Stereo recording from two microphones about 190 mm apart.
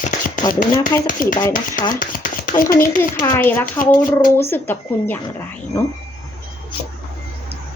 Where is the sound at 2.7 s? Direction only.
45° left (ahead or behind).